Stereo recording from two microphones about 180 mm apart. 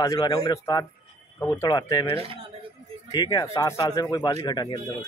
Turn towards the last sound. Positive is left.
turn(degrees=20)  # may be behind; listen again after turning